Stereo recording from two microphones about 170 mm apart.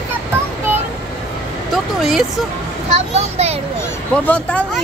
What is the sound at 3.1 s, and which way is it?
Speech, 40° right (ahead or behind).